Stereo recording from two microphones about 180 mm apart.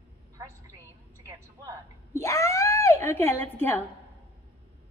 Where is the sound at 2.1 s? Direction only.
15° left (ahead or behind).